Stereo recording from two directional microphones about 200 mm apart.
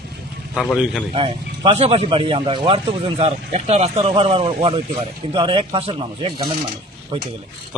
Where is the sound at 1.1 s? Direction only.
25° right (ahead or behind).